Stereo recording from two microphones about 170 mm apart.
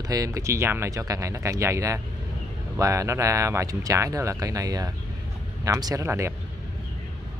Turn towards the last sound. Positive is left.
turn(degrees=-15)  # may be behind; listen again after turning